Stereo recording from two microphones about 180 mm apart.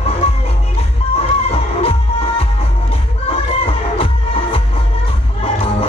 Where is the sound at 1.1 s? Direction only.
35° left (ahead or behind).